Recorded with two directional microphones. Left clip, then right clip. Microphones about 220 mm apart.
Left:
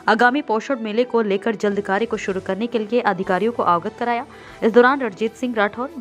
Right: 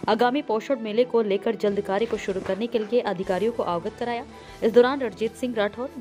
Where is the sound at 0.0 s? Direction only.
40° left (ahead or behind).